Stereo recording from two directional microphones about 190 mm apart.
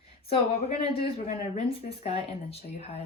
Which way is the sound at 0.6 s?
30° left (ahead or behind).